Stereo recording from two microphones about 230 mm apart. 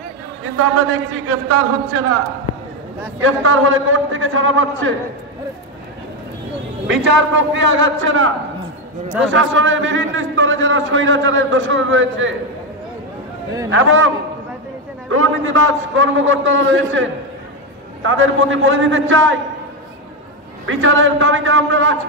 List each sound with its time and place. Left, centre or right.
1.1 s a man's voice: right
3.2 s a man's voice: right
6.9 s a man's voice: right
9.3 s a man's voice: right
13.7 s a man's voice: right
20.6 s a man's voice: right